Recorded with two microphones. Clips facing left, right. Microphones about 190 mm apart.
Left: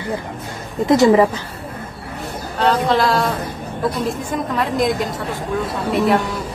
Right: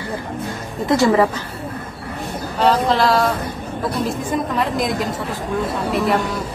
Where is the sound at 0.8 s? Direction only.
20° left (ahead or behind).